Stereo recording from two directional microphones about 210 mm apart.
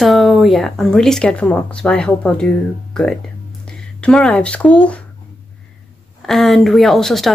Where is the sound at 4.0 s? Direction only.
5° left (ahead or behind).